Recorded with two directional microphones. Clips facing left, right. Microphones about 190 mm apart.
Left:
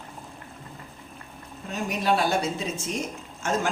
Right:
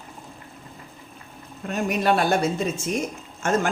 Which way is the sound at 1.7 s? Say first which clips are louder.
Right 3 dB; 55° right (ahead or behind).